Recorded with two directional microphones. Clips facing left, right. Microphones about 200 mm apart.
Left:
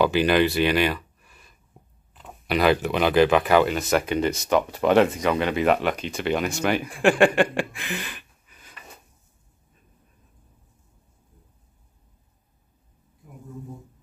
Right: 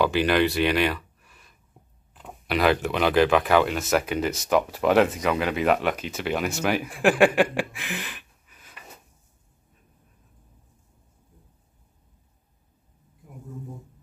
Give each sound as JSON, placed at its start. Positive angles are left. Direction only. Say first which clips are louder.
{"t": 0.0, "sound": "speech", "louder": "left 2 dB", "side_deg": 0}